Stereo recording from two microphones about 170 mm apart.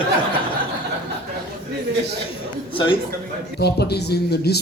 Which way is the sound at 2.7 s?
30° left (ahead or behind).